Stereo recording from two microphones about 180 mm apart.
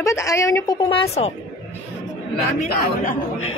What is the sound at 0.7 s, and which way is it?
Speech, 30° left (ahead or behind).